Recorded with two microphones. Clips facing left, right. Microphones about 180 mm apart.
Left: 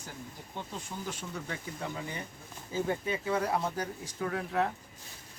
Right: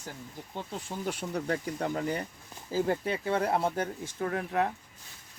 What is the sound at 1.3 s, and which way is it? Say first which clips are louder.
Speech: right 8 dB; 40° right (ahead or behind).